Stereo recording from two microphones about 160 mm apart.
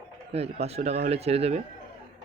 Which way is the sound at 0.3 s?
40° right (ahead or behind).